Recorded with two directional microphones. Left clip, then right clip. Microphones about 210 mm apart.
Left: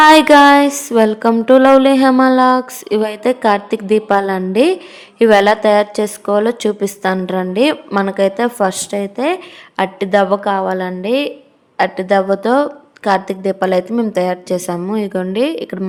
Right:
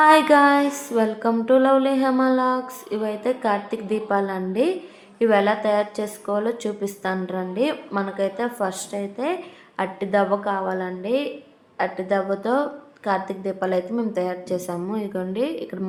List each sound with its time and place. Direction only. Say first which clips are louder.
0.0 s a woman's voice: left 8 dB; 45° left (ahead or behind)